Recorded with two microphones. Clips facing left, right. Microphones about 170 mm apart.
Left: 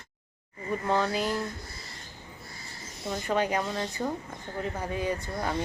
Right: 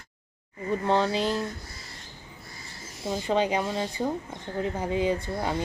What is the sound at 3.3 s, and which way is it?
Speech, 20° right (ahead or behind).